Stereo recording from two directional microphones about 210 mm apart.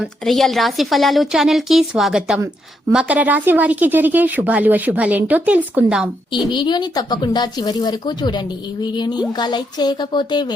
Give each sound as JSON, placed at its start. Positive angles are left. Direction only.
{"t": 0.0, "sound": "a woman's voice", "side_deg": 0}
{"t": 6.5, "sound": "speech", "side_deg": 20}